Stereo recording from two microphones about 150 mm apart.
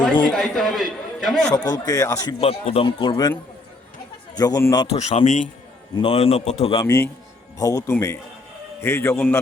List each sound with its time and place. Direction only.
0.3 s a man's voice: 5° left (ahead or behind)
1.5 s speech: 25° left (ahead or behind)
2.4 s a man's voice: 40° left (ahead or behind)
4.4 s speech: 20° left (ahead or behind)
4.9 s speech: 45° left (ahead or behind)
6.0 s a man's voice: 40° left (ahead or behind)
6.8 s speech: 20° left (ahead or behind)